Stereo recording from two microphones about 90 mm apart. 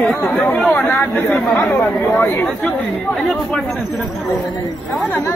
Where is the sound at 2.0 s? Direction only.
25° left (ahead or behind).